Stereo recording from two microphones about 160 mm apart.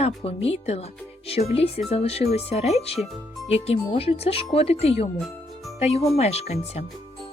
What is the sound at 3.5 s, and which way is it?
Speech, 40° left (ahead or behind).